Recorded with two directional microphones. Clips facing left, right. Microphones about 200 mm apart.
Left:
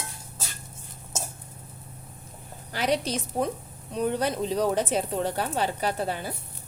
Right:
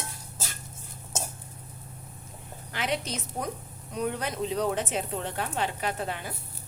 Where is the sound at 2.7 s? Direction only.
40° left (ahead or behind).